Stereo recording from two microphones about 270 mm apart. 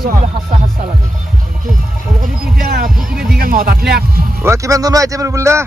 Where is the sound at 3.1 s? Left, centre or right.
Right.